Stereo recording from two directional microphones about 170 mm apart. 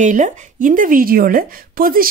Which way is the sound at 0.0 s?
45° right (ahead or behind).